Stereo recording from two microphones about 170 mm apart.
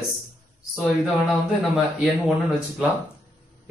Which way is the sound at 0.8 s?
Centre (ahead or behind).